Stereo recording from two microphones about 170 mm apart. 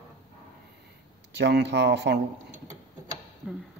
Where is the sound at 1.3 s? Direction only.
90° right.